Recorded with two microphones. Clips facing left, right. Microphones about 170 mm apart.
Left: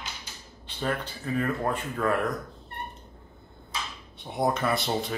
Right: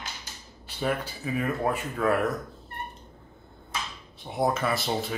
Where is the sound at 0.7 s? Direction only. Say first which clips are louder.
Right 2 dB; 10° right (ahead or behind).